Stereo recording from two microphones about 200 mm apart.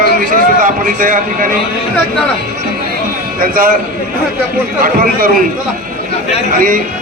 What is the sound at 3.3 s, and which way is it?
Speech, 45° right (ahead or behind).